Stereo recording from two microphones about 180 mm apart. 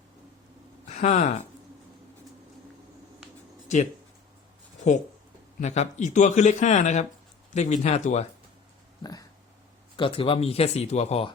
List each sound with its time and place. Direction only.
0.9 s speech: 40° left (ahead or behind)
5.5 s speech: 40° left (ahead or behind)
10.0 s speech: 30° left (ahead or behind)